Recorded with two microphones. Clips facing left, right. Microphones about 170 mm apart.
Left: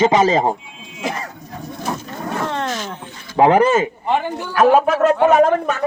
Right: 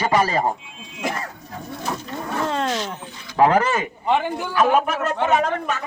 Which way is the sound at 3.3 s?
20° left (ahead or behind).